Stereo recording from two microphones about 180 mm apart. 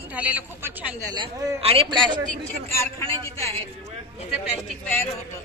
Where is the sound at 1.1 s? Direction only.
30° right (ahead or behind).